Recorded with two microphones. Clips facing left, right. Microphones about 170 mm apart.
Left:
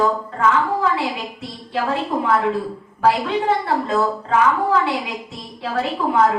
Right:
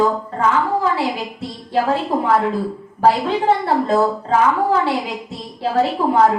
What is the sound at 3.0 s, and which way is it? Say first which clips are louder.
A woman's voice: right 2 dB; 35° right (ahead or behind).